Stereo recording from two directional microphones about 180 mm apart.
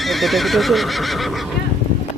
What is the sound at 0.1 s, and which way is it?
Neigh, centre (ahead or behind).